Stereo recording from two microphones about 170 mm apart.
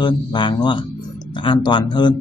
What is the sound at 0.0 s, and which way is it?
Speech, 25° left (ahead or behind).